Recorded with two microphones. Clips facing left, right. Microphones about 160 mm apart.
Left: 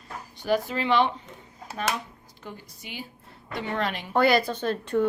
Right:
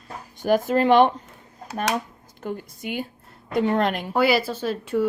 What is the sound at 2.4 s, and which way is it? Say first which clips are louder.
Speech: right 11 dB; 50° right (ahead or behind).